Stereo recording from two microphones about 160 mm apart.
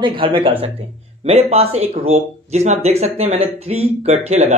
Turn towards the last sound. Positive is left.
turn(degrees=-40)  # may be behind; listen again after turning